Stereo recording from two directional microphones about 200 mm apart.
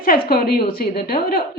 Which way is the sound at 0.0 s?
45° left (ahead or behind).